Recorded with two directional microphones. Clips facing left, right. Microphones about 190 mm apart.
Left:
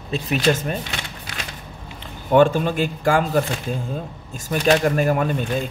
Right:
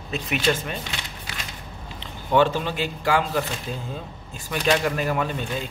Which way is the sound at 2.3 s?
50° left (ahead or behind).